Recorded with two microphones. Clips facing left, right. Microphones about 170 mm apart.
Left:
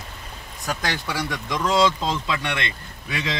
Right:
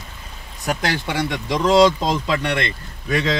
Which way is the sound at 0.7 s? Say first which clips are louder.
Right 4 dB; 25° right (ahead or behind).